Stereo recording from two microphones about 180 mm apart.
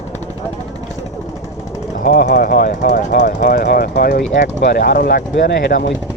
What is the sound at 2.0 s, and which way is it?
Speech, 45° left (ahead or behind).